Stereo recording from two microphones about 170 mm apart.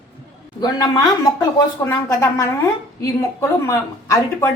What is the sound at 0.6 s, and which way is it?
A woman's voice, 20° left (ahead or behind).